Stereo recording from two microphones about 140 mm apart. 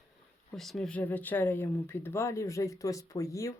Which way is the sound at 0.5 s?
Centre (ahead or behind).